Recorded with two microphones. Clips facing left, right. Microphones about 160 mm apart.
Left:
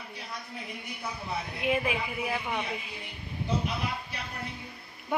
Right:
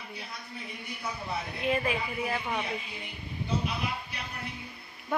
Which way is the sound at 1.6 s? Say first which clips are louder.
Left 1 dB; 10° left (ahead or behind).